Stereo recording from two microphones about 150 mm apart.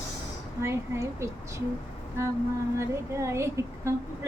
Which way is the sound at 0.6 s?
20° right (ahead or behind).